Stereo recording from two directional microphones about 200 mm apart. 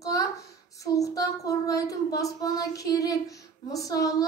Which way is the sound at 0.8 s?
15° left (ahead or behind).